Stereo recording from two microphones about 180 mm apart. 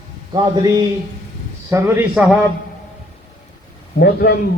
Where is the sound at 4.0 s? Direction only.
60° left (ahead or behind).